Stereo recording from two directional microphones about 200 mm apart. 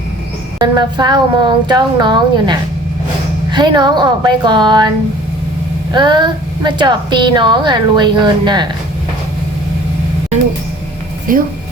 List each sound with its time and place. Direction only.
0.6 s a woman's voice: 20° right (ahead or behind)
5.9 s a woman's voice: 20° right (ahead or behind)
11.3 s speech: 45° right (ahead or behind)